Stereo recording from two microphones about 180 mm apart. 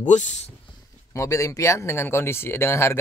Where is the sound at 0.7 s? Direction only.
25° left (ahead or behind).